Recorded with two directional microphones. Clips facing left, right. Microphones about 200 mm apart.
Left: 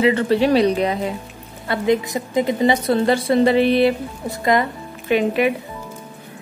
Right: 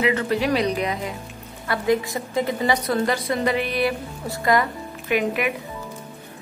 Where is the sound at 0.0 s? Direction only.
30° left (ahead or behind).